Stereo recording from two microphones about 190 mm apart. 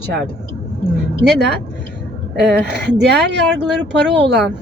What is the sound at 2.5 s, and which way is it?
Speech, 60° right (ahead or behind).